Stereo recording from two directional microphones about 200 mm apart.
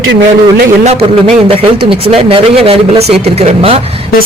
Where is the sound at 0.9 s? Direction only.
30° right (ahead or behind).